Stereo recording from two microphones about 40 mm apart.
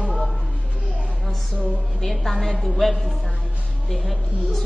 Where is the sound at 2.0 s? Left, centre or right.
Centre.